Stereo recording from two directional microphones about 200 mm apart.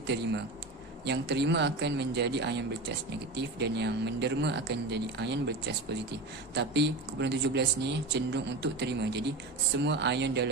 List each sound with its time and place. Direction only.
0.1 s speech: 60° right (ahead or behind)